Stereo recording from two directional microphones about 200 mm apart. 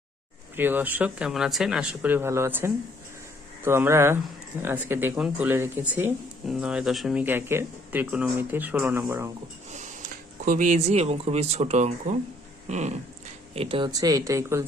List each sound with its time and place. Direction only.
0.5 s speech: 10° right (ahead or behind)
10.4 s speech: 40° right (ahead or behind); by 14.6 s 15° right (ahead or behind)